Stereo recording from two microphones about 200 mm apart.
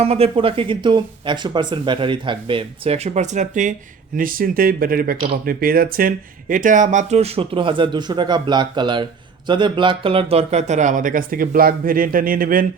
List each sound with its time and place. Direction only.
0.0 s speech: 30° right (ahead or behind)